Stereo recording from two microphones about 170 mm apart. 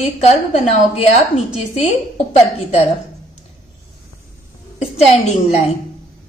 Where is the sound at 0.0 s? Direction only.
40° left (ahead or behind).